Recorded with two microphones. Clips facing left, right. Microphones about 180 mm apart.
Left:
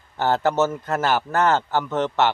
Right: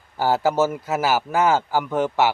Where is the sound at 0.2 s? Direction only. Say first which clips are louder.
Right 1 dB; 10° right (ahead or behind).